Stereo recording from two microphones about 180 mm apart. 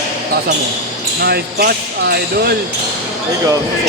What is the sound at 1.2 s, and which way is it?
Speech, 60° right (ahead or behind).